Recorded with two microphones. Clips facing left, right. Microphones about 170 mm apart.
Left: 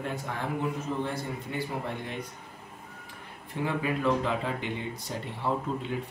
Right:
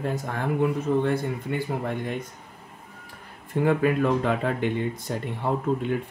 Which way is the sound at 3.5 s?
55° right (ahead or behind).